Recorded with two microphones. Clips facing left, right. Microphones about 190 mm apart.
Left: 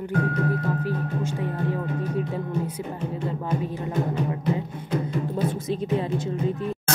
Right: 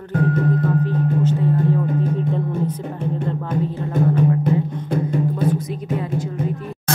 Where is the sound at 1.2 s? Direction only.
10° left (ahead or behind).